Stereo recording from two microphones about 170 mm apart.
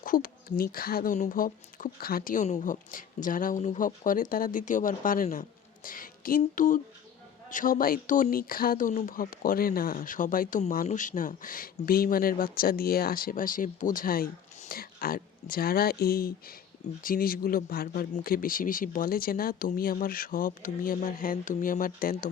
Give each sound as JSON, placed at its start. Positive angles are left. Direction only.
{"t": 0.0, "sound": "speech", "side_deg": 55}